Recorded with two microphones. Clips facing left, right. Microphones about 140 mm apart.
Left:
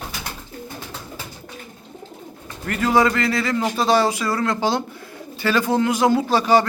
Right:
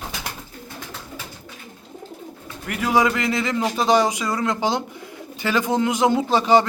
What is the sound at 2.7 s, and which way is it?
A man's voice, 10° right (ahead or behind).